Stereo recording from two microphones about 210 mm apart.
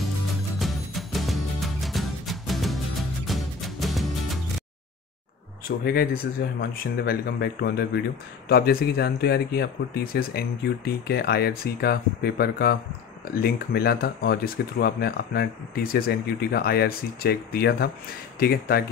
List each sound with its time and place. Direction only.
0.6 s music: centre (ahead or behind)
5.7 s speech: 45° left (ahead or behind)